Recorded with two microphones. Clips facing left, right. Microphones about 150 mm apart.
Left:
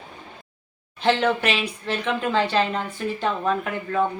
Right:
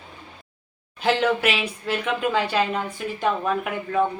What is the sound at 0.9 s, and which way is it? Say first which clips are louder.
Speech: even; 5° right (ahead or behind).